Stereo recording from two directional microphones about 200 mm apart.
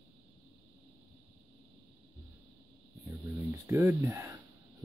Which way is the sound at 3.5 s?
15° right (ahead or behind).